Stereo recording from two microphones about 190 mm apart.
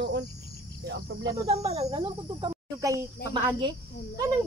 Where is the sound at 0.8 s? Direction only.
65° right (ahead or behind).